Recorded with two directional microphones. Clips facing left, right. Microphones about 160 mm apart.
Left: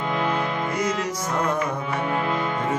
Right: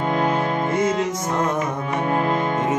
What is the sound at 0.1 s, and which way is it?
Music, 40° right (ahead or behind).